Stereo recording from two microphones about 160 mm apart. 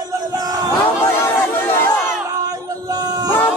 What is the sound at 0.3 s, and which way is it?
Battle cry, 25° right (ahead or behind).